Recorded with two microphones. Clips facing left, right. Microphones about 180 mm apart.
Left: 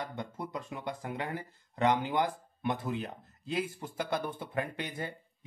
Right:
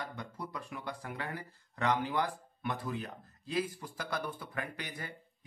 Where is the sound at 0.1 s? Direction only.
25° left (ahead or behind).